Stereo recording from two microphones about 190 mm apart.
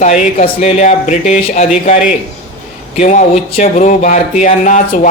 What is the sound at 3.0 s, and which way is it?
Speech, 35° left (ahead or behind).